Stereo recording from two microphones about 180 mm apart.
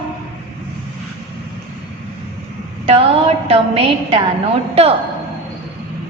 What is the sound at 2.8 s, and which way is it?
A woman's voice, 30° right (ahead or behind).